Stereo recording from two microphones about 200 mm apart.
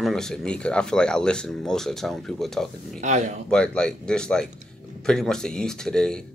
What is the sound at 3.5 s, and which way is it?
Speech, 5° left (ahead or behind).